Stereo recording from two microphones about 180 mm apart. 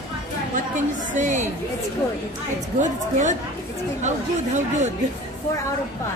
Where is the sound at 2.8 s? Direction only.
45° right (ahead or behind).